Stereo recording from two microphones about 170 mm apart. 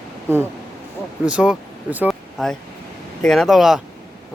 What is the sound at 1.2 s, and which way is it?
Speech, 5° right (ahead or behind).